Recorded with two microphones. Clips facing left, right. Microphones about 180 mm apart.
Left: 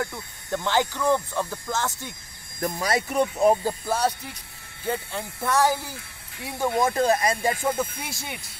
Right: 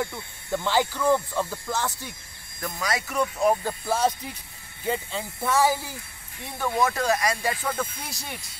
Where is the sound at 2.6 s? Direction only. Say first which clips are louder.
Left 4 dB; 35° left (ahead or behind).